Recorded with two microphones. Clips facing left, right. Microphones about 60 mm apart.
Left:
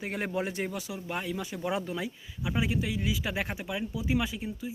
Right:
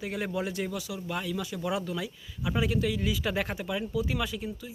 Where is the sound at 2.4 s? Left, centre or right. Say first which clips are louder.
Right 2 dB; centre.